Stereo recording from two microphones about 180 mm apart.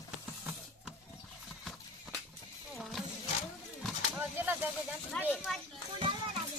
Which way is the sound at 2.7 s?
Centre (ahead or behind).